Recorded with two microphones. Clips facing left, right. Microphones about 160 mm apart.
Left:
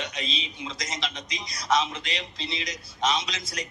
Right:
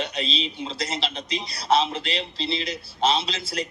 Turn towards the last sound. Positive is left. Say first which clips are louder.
# right 5 dB
turn(degrees=-30)  # may be behind; listen again after turning